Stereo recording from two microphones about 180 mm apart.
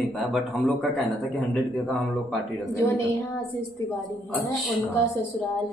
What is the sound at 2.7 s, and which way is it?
Speech, 15° left (ahead or behind).